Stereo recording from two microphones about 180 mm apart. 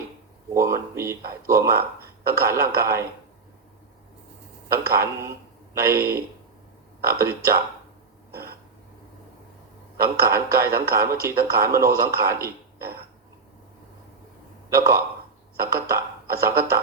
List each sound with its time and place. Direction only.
0.5 s a man's voice: 15° right (ahead or behind)
4.9 s a man's voice: 15° right (ahead or behind)
8.3 s throat clearing: 60° right (ahead or behind)
10.0 s a man's voice: 15° right (ahead or behind)
14.7 s a man's voice: 15° right (ahead or behind)
15.5 s music: 15° right (ahead or behind)